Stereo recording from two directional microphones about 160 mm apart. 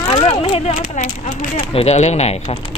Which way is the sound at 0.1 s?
35° left (ahead or behind).